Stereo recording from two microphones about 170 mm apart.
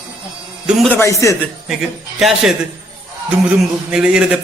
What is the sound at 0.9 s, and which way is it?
Speech, 20° left (ahead or behind).